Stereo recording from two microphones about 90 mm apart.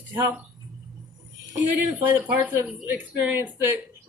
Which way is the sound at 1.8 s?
20° right (ahead or behind).